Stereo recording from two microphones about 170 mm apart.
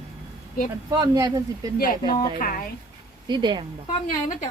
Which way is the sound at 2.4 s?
55° left (ahead or behind).